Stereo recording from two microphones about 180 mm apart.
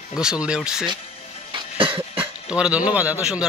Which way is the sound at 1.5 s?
30° right (ahead or behind).